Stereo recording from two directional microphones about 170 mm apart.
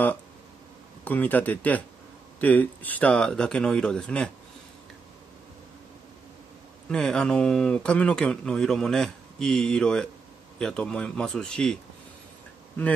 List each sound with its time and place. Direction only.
1.0 s speech: 10° left (ahead or behind)
6.9 s speech: 5° left (ahead or behind)